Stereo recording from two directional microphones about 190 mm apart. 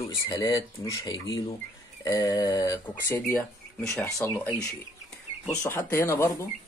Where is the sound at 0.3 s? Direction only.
20° left (ahead or behind).